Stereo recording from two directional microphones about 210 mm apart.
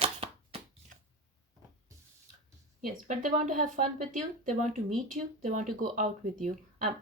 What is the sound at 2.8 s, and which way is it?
Speech, 35° right (ahead or behind).